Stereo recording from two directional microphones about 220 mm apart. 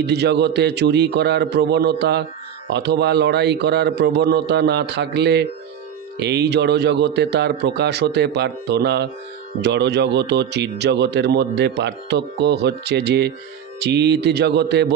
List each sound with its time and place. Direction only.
0.0 s speech: 50° right (ahead or behind)